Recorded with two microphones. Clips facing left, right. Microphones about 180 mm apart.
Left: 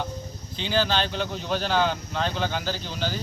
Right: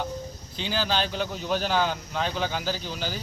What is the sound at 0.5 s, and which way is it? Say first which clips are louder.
Speech: left 3 dB; 5° right (ahead or behind).